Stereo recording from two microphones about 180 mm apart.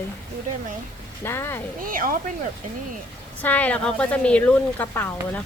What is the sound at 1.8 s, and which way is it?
Speech, 50° right (ahead or behind).